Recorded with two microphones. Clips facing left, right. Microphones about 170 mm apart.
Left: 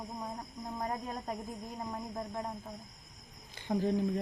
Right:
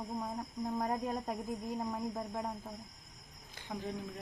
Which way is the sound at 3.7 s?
35° left (ahead or behind).